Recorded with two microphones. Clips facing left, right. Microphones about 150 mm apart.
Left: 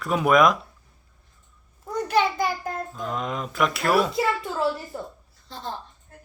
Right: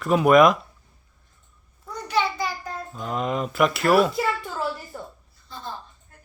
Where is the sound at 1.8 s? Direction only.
50° left (ahead or behind).